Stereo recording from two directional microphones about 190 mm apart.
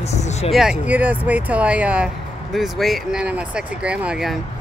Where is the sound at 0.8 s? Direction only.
10° right (ahead or behind).